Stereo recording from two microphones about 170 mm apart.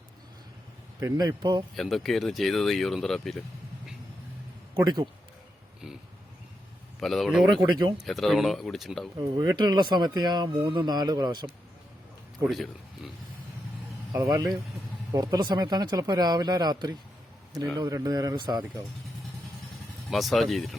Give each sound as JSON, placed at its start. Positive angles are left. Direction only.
{"t": 0.9, "sound": "speech", "side_deg": -20}
{"t": 1.7, "sound": "speech", "side_deg": 0}
{"t": 4.7, "sound": "a man's voice", "side_deg": -25}
{"t": 7.0, "sound": "speech", "side_deg": 0}
{"t": 7.4, "sound": "speech", "side_deg": -25}
{"t": 8.0, "sound": "speech", "side_deg": 0}
{"t": 9.1, "sound": "speech", "side_deg": -25}
{"t": 12.4, "sound": "speech", "side_deg": 0}
{"t": 14.1, "sound": "speech", "side_deg": -20}
{"t": 20.1, "sound": "speech", "side_deg": 0}